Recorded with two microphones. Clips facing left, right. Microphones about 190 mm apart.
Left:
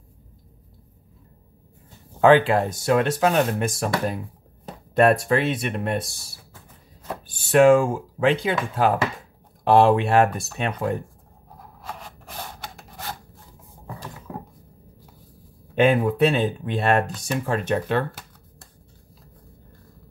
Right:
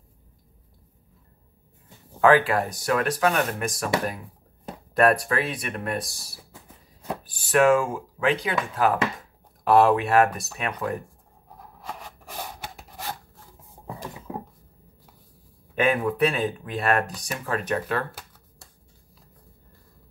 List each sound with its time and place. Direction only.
2.2 s speech: 25° left (ahead or behind)
4.9 s speech: 25° left (ahead or behind)
7.2 s speech: 30° left (ahead or behind)
12.4 s a sound: 10° right (ahead or behind)
13.8 s a sound: 20° right (ahead or behind)
15.7 s speech: 25° left (ahead or behind)